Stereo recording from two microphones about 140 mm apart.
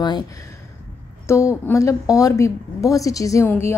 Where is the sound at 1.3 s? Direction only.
20° left (ahead or behind).